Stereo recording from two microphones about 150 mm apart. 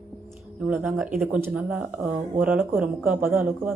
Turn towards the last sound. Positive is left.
turn(degrees=-15)  # may be behind; listen again after turning